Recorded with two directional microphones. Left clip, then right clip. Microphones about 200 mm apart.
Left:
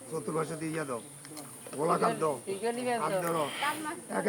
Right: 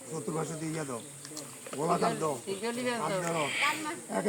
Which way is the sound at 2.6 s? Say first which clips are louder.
Left 2 dB; 55° right (ahead or behind).